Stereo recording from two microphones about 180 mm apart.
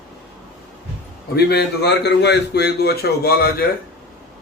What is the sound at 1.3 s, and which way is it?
A man's voice, 65° left (ahead or behind).